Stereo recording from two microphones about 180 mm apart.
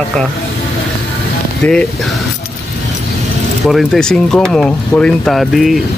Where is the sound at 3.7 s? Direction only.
Centre (ahead or behind).